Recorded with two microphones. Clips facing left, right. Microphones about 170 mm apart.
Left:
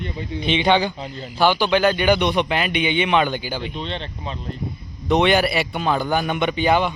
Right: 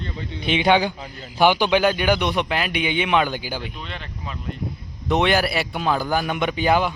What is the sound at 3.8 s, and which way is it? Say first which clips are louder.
Speech: left 5 dB; 25° left (ahead or behind).